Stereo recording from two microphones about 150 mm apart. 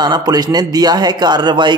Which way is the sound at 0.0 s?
25° right (ahead or behind).